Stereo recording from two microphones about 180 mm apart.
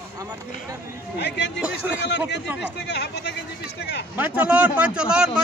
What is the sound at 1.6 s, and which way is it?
Speech, 10° right (ahead or behind).